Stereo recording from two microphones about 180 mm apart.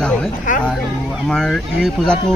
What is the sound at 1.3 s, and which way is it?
Speech, 5° left (ahead or behind).